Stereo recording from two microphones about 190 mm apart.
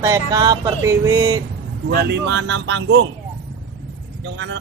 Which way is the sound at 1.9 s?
60° right (ahead or behind).